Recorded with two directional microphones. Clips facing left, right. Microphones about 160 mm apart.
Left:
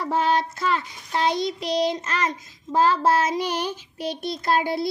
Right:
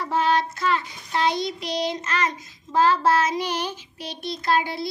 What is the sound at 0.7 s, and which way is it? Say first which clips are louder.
Child singing: even; 40° left (ahead or behind).